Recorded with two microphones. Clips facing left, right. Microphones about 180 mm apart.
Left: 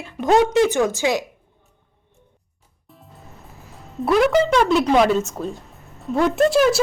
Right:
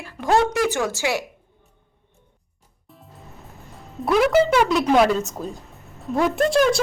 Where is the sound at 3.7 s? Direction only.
Centre (ahead or behind).